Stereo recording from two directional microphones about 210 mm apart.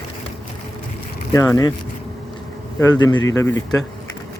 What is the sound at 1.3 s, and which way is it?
Speech, 15° left (ahead or behind).